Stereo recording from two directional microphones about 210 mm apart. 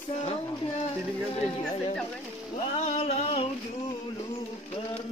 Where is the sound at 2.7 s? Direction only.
30° left (ahead or behind).